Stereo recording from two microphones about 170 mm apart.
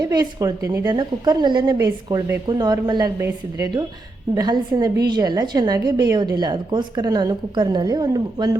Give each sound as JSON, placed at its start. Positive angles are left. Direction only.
{"t": 0.1, "sound": "a woman's voice", "side_deg": -20}